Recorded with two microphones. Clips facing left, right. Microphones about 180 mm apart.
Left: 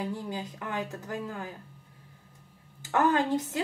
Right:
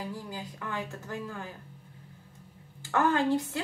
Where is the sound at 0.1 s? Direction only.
20° left (ahead or behind).